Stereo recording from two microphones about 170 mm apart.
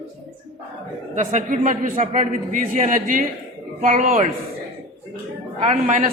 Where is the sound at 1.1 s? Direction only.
45° right (ahead or behind).